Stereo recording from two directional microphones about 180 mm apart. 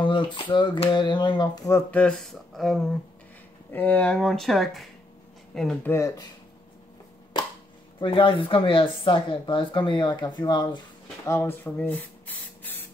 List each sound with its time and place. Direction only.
0.0 s speech: 25° left (ahead or behind)
1.9 s speech: 5° left (ahead or behind)
5.9 s speech: 15° left (ahead or behind)
8.0 s speech: 30° left (ahead or behind)
11.2 s spray: 15° left (ahead or behind)